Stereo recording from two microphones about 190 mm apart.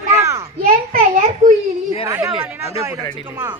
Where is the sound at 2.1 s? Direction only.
10° right (ahead or behind).